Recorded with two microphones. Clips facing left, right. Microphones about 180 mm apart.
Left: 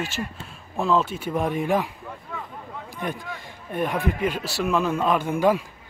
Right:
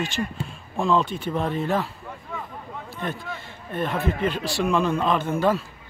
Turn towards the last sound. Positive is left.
turn(degrees=10)  # may be behind; listen again after turning